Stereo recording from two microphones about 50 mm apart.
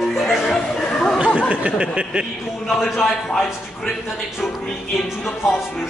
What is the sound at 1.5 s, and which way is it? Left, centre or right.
Speech, right.